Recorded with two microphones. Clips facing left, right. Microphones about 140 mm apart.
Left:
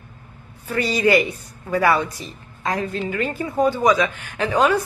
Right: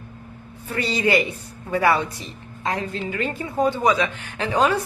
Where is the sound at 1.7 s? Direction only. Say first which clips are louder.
Left 1 dB; 30° right (ahead or behind).